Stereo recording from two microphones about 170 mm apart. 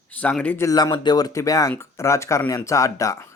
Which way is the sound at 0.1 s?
10° left (ahead or behind).